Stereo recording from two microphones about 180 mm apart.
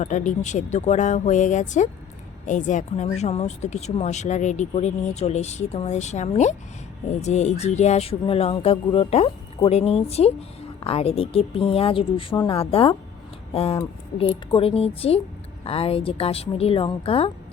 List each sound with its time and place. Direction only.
0.0 s speech: 45° left (ahead or behind)